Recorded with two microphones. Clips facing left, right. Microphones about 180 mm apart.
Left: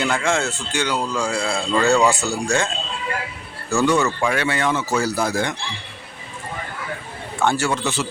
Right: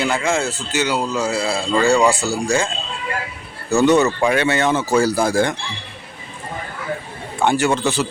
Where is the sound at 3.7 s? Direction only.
20° right (ahead or behind).